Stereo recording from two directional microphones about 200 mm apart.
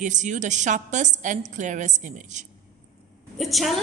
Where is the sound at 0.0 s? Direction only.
35° right (ahead or behind).